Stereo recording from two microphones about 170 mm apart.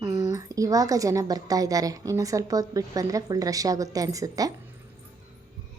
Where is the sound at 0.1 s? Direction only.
20° right (ahead or behind).